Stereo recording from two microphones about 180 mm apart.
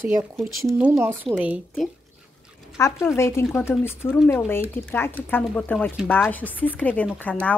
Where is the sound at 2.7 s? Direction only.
15° left (ahead or behind).